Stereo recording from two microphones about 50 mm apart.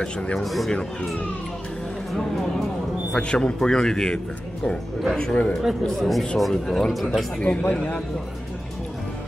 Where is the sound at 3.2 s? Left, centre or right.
Centre.